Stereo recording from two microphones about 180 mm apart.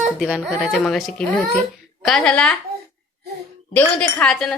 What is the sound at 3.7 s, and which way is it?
Speech, 10° left (ahead or behind).